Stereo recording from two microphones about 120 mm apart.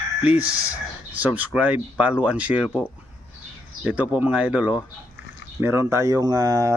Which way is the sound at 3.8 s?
10° right (ahead or behind).